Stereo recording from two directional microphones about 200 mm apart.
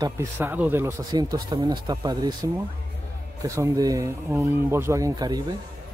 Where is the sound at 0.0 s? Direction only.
15° right (ahead or behind).